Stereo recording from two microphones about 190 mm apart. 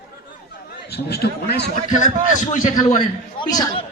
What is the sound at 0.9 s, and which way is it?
Speech, 60° left (ahead or behind).